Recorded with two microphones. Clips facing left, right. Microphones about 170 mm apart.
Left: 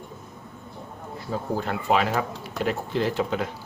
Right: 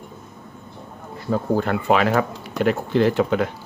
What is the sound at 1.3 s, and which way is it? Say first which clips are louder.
Speech: right 7 dB; 65° right (ahead or behind).